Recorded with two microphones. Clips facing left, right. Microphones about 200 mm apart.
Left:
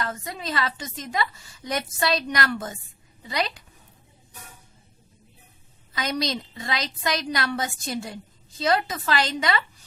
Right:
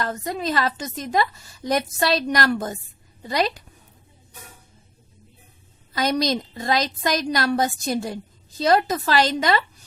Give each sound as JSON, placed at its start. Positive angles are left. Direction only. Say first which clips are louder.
{"t": 0.0, "sound": "a woman's voice", "louder": "right 5 dB", "side_deg": -40}
{"t": 5.9, "sound": "a woman's voice", "louder": "right 6 dB", "side_deg": -45}